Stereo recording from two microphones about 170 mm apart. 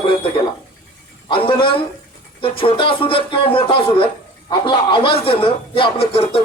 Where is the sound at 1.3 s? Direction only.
30° left (ahead or behind).